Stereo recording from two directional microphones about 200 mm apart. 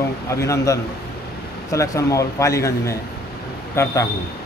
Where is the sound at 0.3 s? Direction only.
15° left (ahead or behind).